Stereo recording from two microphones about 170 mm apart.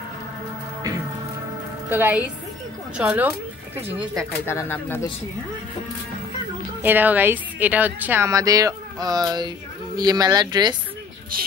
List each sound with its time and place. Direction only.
1.9 s speech: 10° right (ahead or behind)
4.5 s speech: 15° left (ahead or behind)
6.8 s speech: 10° right (ahead or behind)
11.3 s speech: 55° right (ahead or behind)